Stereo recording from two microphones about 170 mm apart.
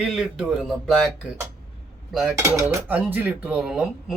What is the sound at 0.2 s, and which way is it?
Speech, centre (ahead or behind).